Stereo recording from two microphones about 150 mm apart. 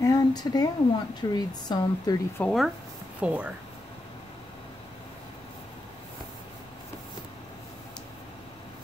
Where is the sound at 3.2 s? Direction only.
10° right (ahead or behind).